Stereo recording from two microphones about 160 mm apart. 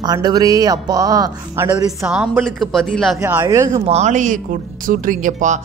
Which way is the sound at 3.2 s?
20° right (ahead or behind).